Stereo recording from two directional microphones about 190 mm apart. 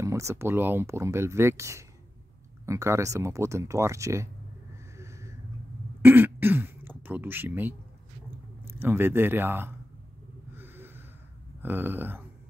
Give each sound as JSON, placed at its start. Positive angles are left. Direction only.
{"t": 0.0, "sound": "speech", "side_deg": -15}
{"t": 4.9, "sound": "a sound", "side_deg": -15}
{"t": 6.0, "sound": "speech", "side_deg": -10}
{"t": 10.5, "sound": "snort", "side_deg": -10}
{"t": 11.6, "sound": "speech", "side_deg": -10}